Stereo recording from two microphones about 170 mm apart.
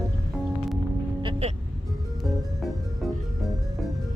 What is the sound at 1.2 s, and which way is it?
Vehicle, 35° right (ahead or behind).